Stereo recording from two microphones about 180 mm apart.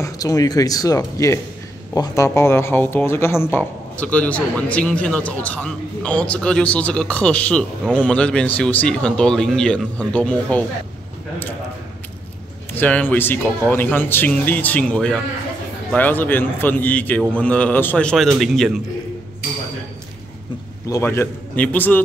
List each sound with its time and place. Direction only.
0.0 s speech: 20° left (ahead or behind)
12.7 s speech: 10° left (ahead or behind)
20.9 s speech: 15° left (ahead or behind)